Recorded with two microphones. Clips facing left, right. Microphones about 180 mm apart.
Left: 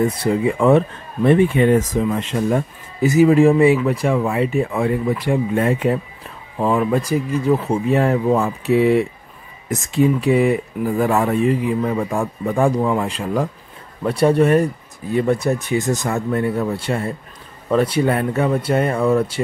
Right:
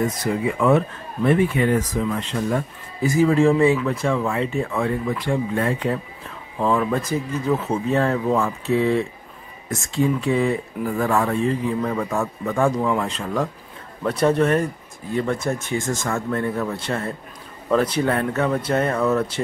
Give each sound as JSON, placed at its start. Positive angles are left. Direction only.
{"t": 0.0, "sound": "speech", "side_deg": 30}